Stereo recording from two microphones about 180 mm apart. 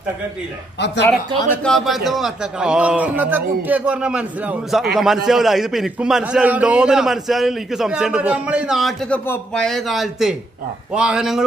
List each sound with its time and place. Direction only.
0.7 s speech: 75° left (ahead or behind)
1.6 s a man's voice: centre (ahead or behind)